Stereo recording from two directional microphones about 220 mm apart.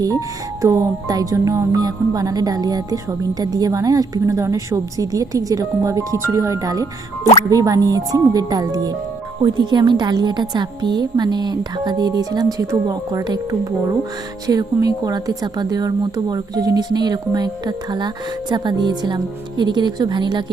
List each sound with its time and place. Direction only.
0.6 s music: 15° right (ahead or behind)
9.4 s speech: 20° right (ahead or behind)